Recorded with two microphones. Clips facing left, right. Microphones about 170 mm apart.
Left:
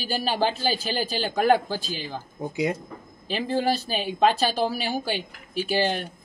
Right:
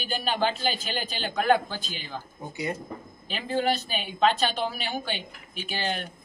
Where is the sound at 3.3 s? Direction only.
35° left (ahead or behind).